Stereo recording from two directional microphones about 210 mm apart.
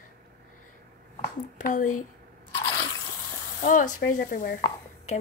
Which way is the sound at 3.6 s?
40° left (ahead or behind).